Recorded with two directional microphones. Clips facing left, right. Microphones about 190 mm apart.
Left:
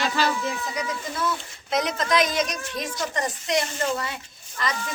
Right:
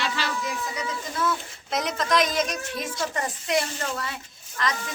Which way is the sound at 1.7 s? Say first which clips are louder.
Left 1 dB; centre (ahead or behind).